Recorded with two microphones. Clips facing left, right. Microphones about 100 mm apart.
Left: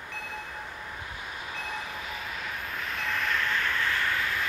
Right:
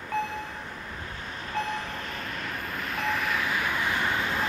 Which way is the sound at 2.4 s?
Centre (ahead or behind).